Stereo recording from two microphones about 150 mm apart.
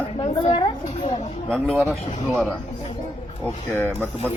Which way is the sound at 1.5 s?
5° left (ahead or behind).